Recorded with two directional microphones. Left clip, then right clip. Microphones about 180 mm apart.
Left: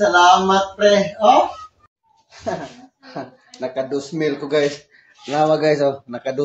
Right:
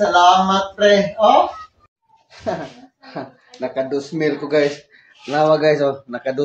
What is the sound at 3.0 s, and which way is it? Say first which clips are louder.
Speech: right 1 dB; 5° left (ahead or behind).